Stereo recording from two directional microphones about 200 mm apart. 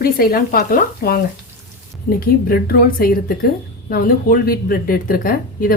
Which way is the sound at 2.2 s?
50° left (ahead or behind).